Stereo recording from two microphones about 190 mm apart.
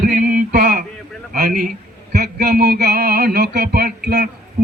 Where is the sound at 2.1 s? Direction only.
55° right (ahead or behind).